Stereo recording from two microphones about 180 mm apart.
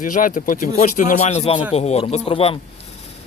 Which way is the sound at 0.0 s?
50° left (ahead or behind).